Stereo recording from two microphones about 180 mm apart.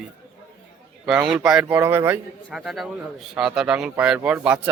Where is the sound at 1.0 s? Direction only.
5° right (ahead or behind).